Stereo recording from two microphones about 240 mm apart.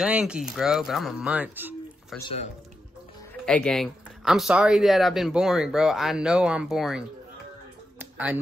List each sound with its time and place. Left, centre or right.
0.0 s speech: centre
2.1 s speech: left
3.4 s speech: centre
8.0 s a sound: centre